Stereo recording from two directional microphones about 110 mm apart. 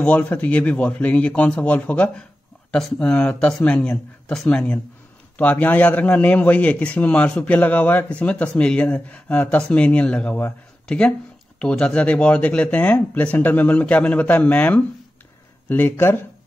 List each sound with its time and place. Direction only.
0.0 s a man's voice: 10° left (ahead or behind)